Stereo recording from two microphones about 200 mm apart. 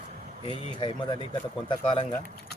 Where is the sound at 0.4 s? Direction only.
25° left (ahead or behind).